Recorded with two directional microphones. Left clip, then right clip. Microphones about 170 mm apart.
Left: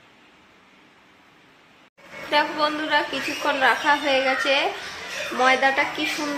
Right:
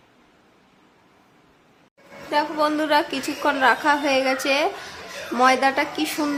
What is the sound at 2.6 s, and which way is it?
A woman's voice, 45° right (ahead or behind).